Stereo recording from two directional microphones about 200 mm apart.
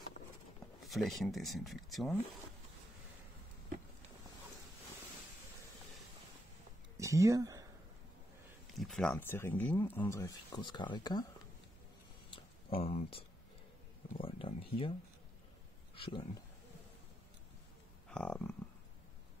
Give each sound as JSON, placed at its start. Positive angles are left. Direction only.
{"t": 0.8, "sound": "speech", "side_deg": 0}
{"t": 7.0, "sound": "speech", "side_deg": -15}
{"t": 8.7, "sound": "speech", "side_deg": 0}
{"t": 12.3, "sound": "a sound", "side_deg": 30}
{"t": 14.2, "sound": "a sound", "side_deg": 25}
{"t": 16.0, "sound": "speech", "side_deg": 25}
{"t": 18.0, "sound": "speech", "side_deg": 5}